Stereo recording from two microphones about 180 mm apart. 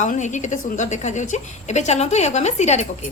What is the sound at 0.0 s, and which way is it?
A woman's voice, 40° left (ahead or behind).